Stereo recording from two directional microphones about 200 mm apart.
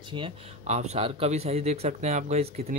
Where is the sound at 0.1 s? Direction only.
30° right (ahead or behind).